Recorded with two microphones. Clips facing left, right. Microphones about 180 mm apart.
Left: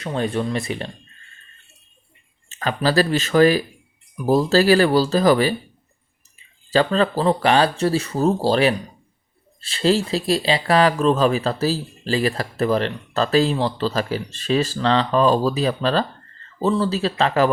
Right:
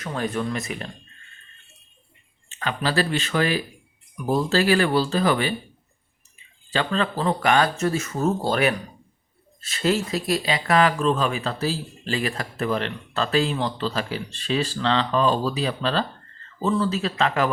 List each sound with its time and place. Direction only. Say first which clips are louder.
0.0 s speech: left 4 dB; 25° left (ahead or behind)
2.5 s speech: left 5 dB; 40° left (ahead or behind)
6.7 s speech: left 6 dB; 40° left (ahead or behind)